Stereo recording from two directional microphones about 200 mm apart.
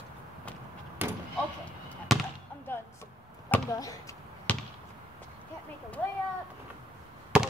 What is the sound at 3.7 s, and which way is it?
Basketball bounce, 15° left (ahead or behind).